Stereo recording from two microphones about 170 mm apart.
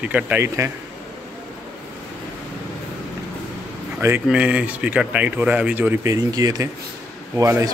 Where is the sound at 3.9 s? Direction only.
10° right (ahead or behind).